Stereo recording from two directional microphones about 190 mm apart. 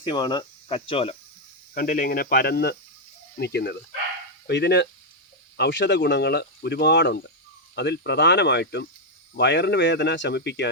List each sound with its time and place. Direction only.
0.0 s speech: 25° left (ahead or behind)
1.7 s speech: 50° left (ahead or behind)